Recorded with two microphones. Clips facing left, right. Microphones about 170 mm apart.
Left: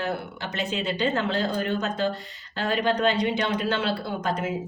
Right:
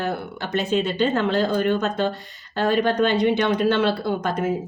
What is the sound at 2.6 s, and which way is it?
Speech, 50° right (ahead or behind).